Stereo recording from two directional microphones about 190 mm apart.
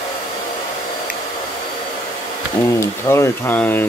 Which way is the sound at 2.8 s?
15° left (ahead or behind).